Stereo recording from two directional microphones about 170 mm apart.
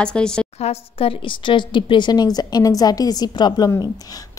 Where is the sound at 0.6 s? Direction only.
35° left (ahead or behind).